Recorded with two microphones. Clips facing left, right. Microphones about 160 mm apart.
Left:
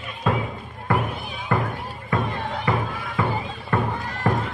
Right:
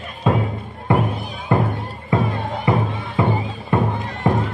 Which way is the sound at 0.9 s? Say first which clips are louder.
Right 5 dB; 25° right (ahead or behind).